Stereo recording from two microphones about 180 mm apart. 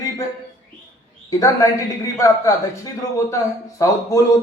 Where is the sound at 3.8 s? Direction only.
15° left (ahead or behind).